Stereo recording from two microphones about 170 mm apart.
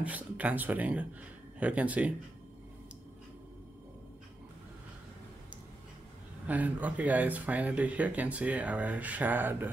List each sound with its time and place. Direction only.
0.0 s speech: 10° right (ahead or behind)
6.4 s speech: 10° right (ahead or behind)